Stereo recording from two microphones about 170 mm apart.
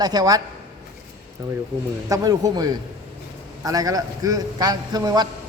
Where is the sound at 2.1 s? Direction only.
20° right (ahead or behind).